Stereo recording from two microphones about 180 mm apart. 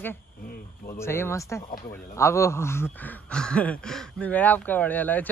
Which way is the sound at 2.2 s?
15° left (ahead or behind).